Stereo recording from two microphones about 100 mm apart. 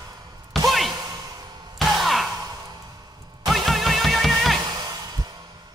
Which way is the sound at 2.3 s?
40° right (ahead or behind).